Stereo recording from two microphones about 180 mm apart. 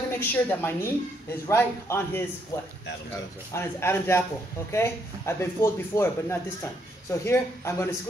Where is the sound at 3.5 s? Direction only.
15° left (ahead or behind).